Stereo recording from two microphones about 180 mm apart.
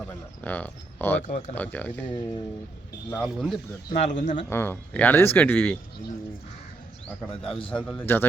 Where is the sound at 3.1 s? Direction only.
Centre (ahead or behind).